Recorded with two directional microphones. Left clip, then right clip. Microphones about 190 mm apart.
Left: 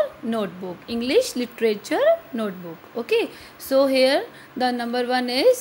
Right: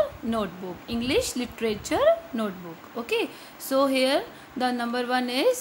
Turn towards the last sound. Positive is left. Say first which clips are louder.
# left 5 dB
turn(degrees=10)  # may be behind; listen again after turning